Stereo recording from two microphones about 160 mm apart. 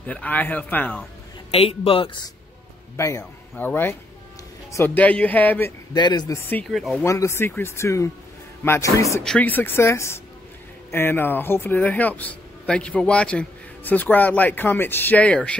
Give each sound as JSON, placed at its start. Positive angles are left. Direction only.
{"t": 0.0, "sound": "speech", "side_deg": 10}
{"t": 1.5, "sound": "speech", "side_deg": 40}
{"t": 3.0, "sound": "speech", "side_deg": 15}
{"t": 5.9, "sound": "speech", "side_deg": 25}
{"t": 6.7, "sound": "speech", "side_deg": 0}
{"t": 7.0, "sound": "speech", "side_deg": 20}
{"t": 9.2, "sound": "speech", "side_deg": 5}